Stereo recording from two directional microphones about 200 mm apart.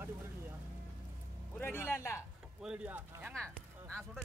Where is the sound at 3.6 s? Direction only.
5° left (ahead or behind).